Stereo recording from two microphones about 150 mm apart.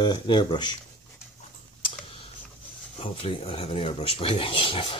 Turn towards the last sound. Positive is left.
turn(degrees=35)  # may be behind; listen again after turning